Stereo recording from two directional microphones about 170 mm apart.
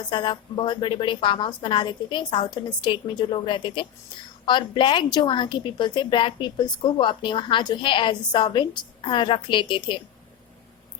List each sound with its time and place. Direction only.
0.1 s a woman's voice: 25° left (ahead or behind)